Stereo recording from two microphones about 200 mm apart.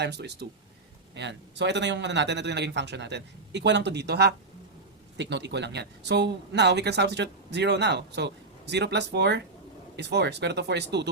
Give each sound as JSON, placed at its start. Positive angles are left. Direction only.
{"t": 0.0, "sound": "speech", "side_deg": -55}